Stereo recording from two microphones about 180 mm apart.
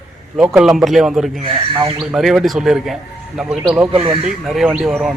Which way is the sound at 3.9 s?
30° right (ahead or behind).